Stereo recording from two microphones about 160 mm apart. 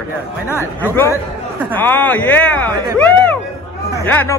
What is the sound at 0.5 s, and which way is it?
Speech, 15° left (ahead or behind).